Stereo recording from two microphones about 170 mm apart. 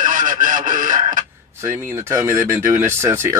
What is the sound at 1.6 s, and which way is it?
Speech, 15° right (ahead or behind).